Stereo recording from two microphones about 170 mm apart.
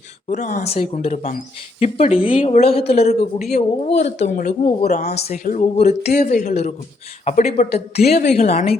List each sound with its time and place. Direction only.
0.3 s speech: 45° left (ahead or behind)